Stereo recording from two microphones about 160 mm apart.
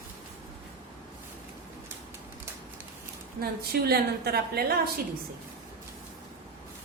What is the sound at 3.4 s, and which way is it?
A woman's voice, 75° right (ahead or behind).